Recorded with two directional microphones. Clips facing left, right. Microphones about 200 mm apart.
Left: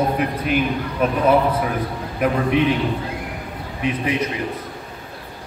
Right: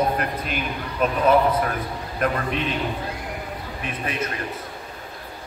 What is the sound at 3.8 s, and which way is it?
Speech, 15° left (ahead or behind).